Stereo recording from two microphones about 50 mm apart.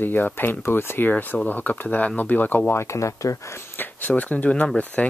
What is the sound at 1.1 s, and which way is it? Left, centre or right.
Speech, left.